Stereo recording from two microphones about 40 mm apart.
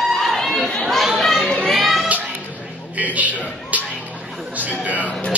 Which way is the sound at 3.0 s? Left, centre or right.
Right.